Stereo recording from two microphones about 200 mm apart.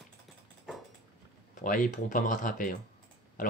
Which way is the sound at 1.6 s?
40° left (ahead or behind).